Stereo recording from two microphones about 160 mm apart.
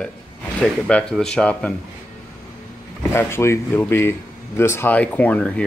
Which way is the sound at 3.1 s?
15° left (ahead or behind).